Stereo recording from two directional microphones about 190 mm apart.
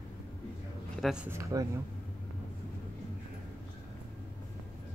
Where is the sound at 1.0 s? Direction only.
5° right (ahead or behind).